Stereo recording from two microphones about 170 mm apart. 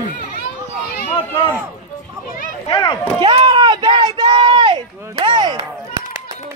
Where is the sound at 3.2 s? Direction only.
30° right (ahead or behind).